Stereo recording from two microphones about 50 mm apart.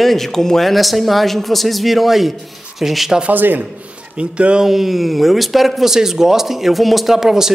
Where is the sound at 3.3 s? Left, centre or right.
Right.